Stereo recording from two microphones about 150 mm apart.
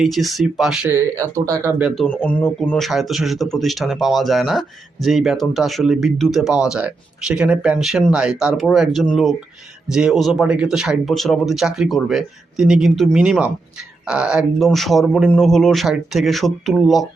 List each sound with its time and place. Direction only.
0.0 s speech: centre (ahead or behind)
0.9 s speech: 20° right (ahead or behind)
2.0 s speech: 10° left (ahead or behind)